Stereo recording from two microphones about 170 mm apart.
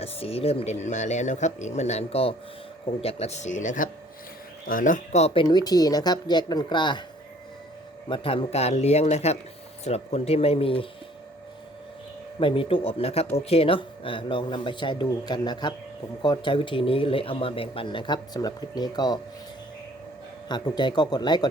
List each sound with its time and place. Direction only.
0.0 s speech: 35° left (ahead or behind)
8.1 s speech: 30° left (ahead or behind)
12.4 s speech: 30° left (ahead or behind)
20.5 s speech: 25° left (ahead or behind)